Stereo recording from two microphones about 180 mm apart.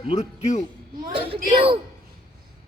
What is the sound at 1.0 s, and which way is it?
Speech, 30° right (ahead or behind).